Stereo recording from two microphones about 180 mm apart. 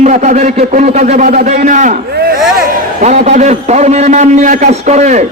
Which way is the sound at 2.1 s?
60° right (ahead or behind).